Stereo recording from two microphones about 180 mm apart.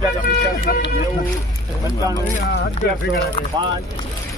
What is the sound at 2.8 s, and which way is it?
Speech, 70° left (ahead or behind).